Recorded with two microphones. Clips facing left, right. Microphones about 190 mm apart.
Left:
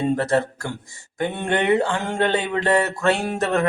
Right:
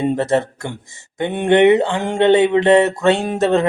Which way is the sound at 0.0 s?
25° right (ahead or behind).